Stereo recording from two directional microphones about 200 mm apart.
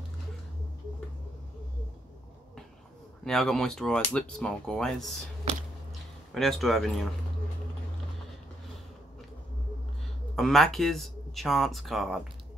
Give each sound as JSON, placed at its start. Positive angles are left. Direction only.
{"t": 3.3, "sound": "speech", "side_deg": 0}
{"t": 5.4, "sound": "a sound", "side_deg": -35}
{"t": 6.3, "sound": "speech", "side_deg": 0}
{"t": 10.3, "sound": "speech", "side_deg": 0}